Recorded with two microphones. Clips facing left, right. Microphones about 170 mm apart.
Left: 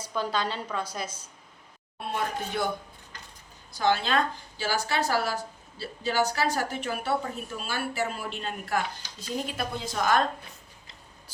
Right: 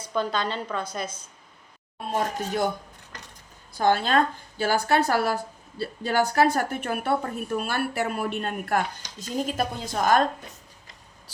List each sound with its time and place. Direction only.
0.1 s a woman's voice: 5° left (ahead or behind)
2.1 s speech: 45° right (ahead or behind)
3.7 s a woman's voice: 50° right (ahead or behind)